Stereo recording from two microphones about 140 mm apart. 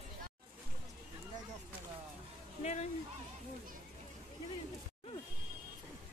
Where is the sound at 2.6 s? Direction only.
50° left (ahead or behind).